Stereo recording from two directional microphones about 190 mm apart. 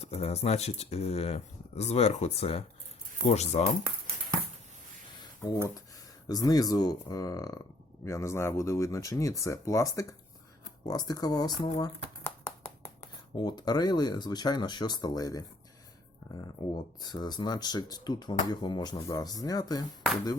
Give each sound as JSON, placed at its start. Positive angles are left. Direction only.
{"t": 0.0, "sound": "speech", "side_deg": 35}
{"t": 5.2, "sound": "a sound", "side_deg": 20}
{"t": 6.2, "sound": "speech", "side_deg": 20}
{"t": 11.8, "sound": "a sound", "side_deg": 15}
{"t": 13.3, "sound": "speech", "side_deg": 20}
{"t": 16.6, "sound": "speech", "side_deg": 20}